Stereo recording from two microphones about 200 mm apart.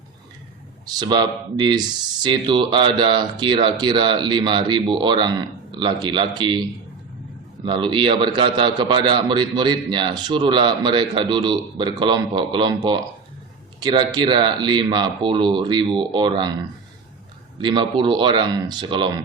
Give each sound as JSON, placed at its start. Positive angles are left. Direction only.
{"t": 0.9, "sound": "a man's voice", "side_deg": -20}
{"t": 7.6, "sound": "a man's voice", "side_deg": -25}
{"t": 17.6, "sound": "a man's voice", "side_deg": -25}